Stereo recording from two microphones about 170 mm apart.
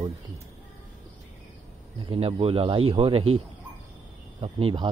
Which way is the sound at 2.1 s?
35° right (ahead or behind).